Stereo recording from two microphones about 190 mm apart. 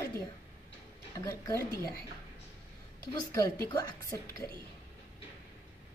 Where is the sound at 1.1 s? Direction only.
15° left (ahead or behind).